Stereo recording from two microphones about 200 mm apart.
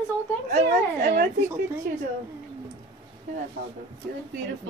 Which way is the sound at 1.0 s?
50° right (ahead or behind).